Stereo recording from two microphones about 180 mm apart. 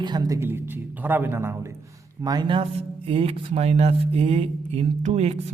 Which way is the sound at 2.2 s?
25° right (ahead or behind).